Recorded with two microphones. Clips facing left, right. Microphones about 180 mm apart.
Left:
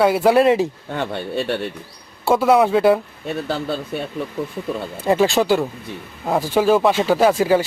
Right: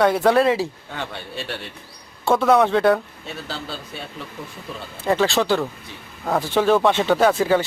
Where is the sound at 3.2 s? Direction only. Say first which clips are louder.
Left 8 dB; 55° left (ahead or behind).